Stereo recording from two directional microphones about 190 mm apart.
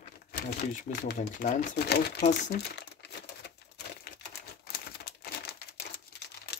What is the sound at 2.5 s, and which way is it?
Crumpling, 60° left (ahead or behind).